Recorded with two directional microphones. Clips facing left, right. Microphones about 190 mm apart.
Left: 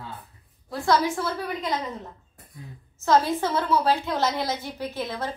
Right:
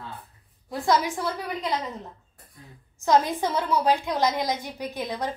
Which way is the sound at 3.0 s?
15° right (ahead or behind).